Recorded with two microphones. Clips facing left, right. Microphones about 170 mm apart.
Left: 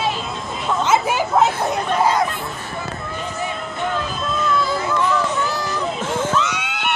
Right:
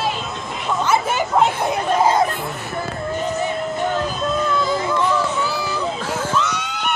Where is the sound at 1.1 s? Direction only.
5° left (ahead or behind).